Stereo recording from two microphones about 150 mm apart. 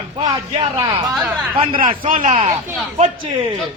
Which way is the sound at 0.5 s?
30° right (ahead or behind).